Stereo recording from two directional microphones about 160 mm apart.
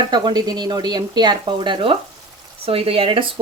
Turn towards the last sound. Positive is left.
turn(degrees=-35)  # may be behind; listen again after turning